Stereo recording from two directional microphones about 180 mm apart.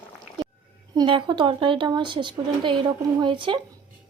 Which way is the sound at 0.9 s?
25° right (ahead or behind).